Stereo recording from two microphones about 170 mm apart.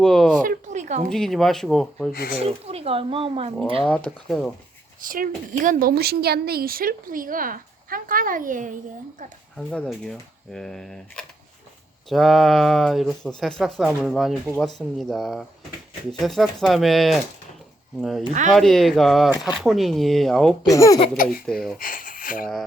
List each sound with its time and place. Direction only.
0.0 s speech: centre (ahead or behind)
0.4 s speech: 45° right (ahead or behind)
1.1 s speech: centre (ahead or behind)
2.4 s speech: 35° right (ahead or behind)
3.8 s speech: 5° left (ahead or behind)
4.9 s speech: 55° right (ahead or behind)
9.6 s speech: 5° left (ahead or behind)
18.5 s speech: centre (ahead or behind)
20.7 s speech: 20° left (ahead or behind)
21.4 s speech: 5° left (ahead or behind)
21.8 s speech: 55° left (ahead or behind)